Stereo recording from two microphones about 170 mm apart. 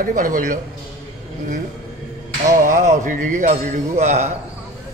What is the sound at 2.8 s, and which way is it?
A man's voice, 45° right (ahead or behind).